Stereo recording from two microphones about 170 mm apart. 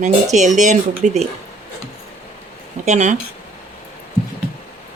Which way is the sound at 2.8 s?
45° right (ahead or behind).